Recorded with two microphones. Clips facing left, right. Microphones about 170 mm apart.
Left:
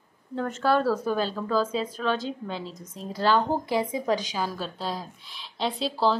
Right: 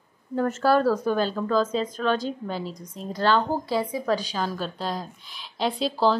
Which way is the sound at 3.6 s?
20° left (ahead or behind).